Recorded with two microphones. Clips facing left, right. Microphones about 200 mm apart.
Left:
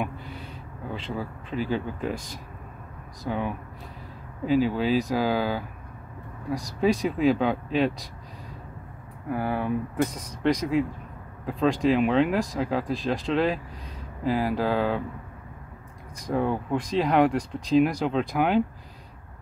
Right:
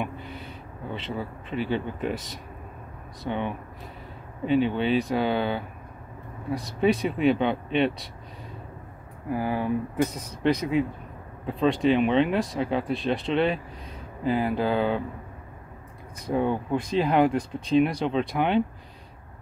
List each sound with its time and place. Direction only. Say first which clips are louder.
0.8 s speech: even; centre (ahead or behind)
3.3 s speech: even; centre (ahead or behind)
9.3 s speech: right 1 dB; centre (ahead or behind)
10.0 s speech: right 1 dB; 30° right (ahead or behind)
10.4 s speech: even; centre (ahead or behind)
16.3 s speech: right 1 dB; centre (ahead or behind)